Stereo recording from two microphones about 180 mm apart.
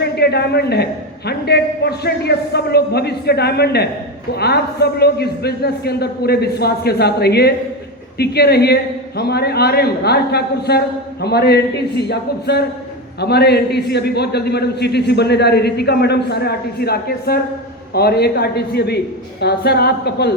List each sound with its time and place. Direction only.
0.0 s a man's voice: 65° left (ahead or behind)